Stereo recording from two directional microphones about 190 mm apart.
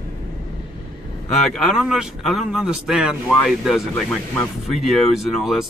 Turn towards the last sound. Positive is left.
turn(degrees=0)  # may be behind; listen again after turning